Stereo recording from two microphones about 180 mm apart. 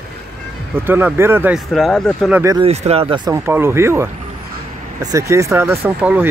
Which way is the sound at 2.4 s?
20° right (ahead or behind).